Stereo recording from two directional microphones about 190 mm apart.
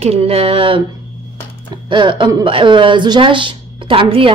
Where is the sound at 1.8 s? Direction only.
25° right (ahead or behind).